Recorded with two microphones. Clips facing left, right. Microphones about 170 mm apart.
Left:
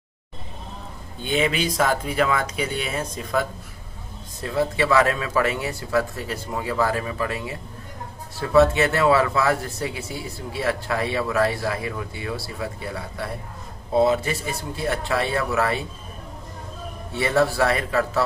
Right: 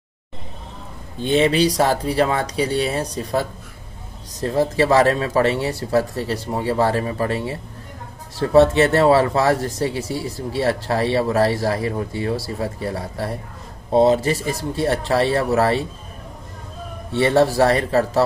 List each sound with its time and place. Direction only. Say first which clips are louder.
1.1 s speech: right 6 dB; 35° right (ahead or behind)
17.1 s speech: right 5 dB; 35° right (ahead or behind)